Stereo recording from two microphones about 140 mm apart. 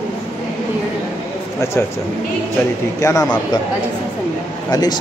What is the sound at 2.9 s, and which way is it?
Speech, 20° left (ahead or behind).